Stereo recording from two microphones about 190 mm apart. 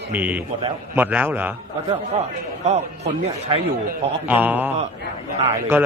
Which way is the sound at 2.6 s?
35° right (ahead or behind).